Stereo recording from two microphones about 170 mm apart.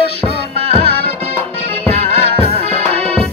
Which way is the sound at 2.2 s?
35° left (ahead or behind).